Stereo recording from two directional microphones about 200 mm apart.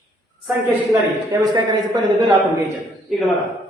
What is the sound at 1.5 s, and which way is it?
Speech, 20° right (ahead or behind).